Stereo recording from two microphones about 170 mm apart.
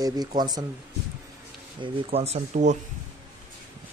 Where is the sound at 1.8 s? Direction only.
35° right (ahead or behind).